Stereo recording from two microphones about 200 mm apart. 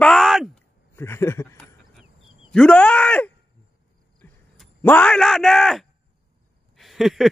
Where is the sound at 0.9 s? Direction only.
10° left (ahead or behind).